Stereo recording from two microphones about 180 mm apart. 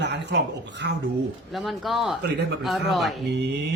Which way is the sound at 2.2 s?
70° right (ahead or behind).